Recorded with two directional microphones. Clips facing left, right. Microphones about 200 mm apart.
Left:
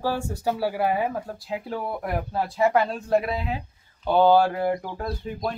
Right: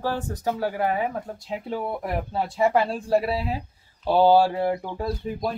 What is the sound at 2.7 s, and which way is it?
Speech, 30° right (ahead or behind).